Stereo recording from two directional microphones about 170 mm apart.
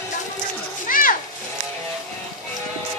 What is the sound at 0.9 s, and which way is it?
Children playing, 55° left (ahead or behind).